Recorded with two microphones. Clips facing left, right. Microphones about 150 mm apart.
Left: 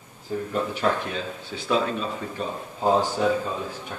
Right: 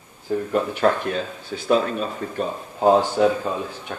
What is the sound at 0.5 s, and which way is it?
Speech, 55° right (ahead or behind).